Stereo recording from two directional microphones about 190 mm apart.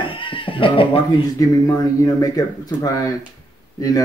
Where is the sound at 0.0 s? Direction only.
25° left (ahead or behind).